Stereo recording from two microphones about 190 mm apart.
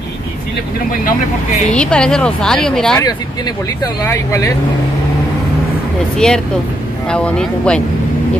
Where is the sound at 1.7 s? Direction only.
5° left (ahead or behind).